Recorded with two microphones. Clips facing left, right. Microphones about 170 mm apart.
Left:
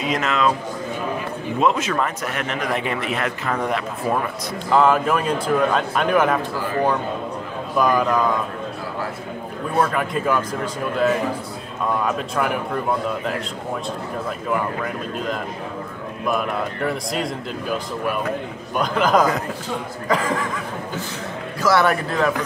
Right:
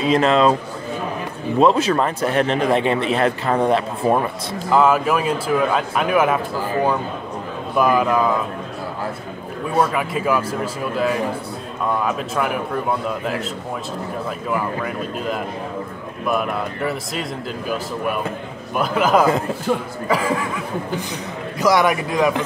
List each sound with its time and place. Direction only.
0.0 s a man's voice: 30° right (ahead or behind)
1.6 s a man's voice: 35° right (ahead or behind)
4.7 s a man's voice: 5° right (ahead or behind)
9.8 s a man's voice: 5° right (ahead or behind)
16.3 s a man's voice: centre (ahead or behind)
21.5 s a man's voice: 15° right (ahead or behind)